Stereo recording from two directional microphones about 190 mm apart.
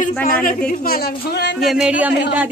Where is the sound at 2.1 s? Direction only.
65° left (ahead or behind).